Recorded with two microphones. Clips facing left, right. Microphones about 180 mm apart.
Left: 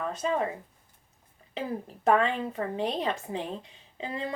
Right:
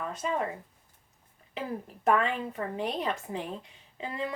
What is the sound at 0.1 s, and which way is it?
Speech, 30° left (ahead or behind).